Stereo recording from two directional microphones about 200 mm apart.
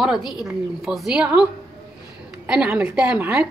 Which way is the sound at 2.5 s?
5° right (ahead or behind).